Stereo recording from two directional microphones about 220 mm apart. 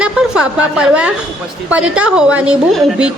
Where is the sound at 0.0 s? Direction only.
5° right (ahead or behind).